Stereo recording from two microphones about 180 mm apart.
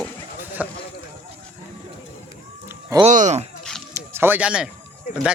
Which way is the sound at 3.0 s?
40° right (ahead or behind).